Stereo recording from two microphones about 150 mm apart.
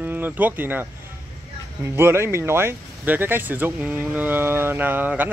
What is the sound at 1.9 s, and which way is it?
Speech, 15° right (ahead or behind).